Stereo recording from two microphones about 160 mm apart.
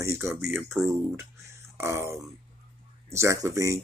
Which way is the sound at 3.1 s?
20° right (ahead or behind).